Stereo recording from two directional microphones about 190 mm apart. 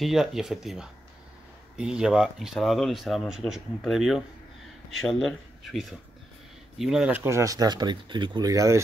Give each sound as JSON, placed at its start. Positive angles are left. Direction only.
{"t": 0.0, "sound": "speech", "side_deg": 0}
{"t": 5.6, "sound": "speech", "side_deg": 0}
{"t": 7.2, "sound": "speech", "side_deg": -15}